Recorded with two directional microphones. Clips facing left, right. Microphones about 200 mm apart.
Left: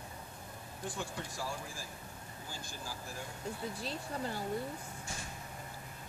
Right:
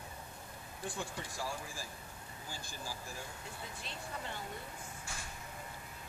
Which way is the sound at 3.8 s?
35° left (ahead or behind).